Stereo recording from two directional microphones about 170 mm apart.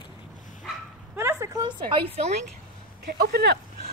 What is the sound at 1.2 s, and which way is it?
Speech, 15° right (ahead or behind).